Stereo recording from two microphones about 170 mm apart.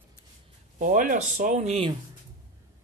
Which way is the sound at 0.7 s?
50° right (ahead or behind).